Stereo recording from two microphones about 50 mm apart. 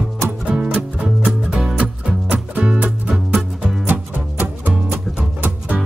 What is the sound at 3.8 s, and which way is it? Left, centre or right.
Music, right.